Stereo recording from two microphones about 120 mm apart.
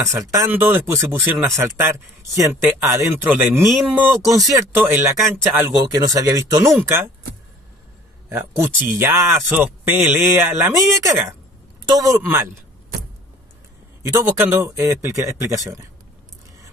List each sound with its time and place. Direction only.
0.0 s speech: 25° right (ahead or behind)
8.3 s speech: 20° right (ahead or behind)
14.0 s speech: 25° right (ahead or behind)